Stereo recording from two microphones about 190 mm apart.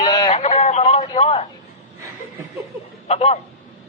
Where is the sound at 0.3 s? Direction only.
35° left (ahead or behind).